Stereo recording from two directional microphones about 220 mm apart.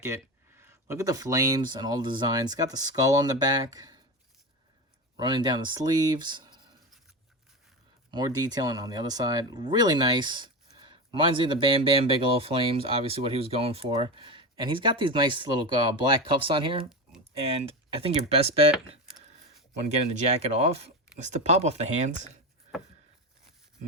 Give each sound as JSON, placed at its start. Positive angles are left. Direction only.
{"t": 0.5, "sound": "speech", "side_deg": -10}
{"t": 5.1, "sound": "speech", "side_deg": -20}
{"t": 8.1, "sound": "speech", "side_deg": -20}
{"t": 20.1, "sound": "speech", "side_deg": -30}